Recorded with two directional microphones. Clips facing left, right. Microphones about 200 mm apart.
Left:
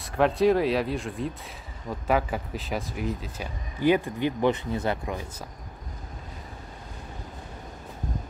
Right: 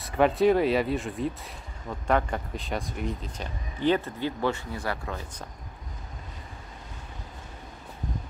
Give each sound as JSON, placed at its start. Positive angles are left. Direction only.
{"t": 0.0, "sound": "speech", "side_deg": 0}